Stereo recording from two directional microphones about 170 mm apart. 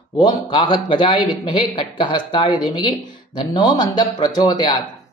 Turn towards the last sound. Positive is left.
turn(degrees=25)  # may be behind; listen again after turning